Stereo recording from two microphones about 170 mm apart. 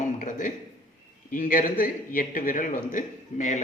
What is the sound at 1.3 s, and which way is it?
A man's voice, 50° left (ahead or behind).